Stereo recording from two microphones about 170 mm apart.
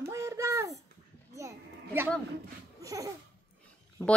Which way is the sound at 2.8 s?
20° right (ahead or behind).